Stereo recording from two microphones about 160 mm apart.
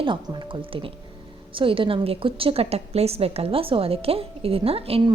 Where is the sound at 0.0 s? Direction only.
30° right (ahead or behind).